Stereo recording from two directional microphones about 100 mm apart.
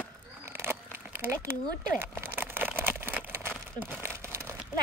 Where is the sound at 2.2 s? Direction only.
20° right (ahead or behind).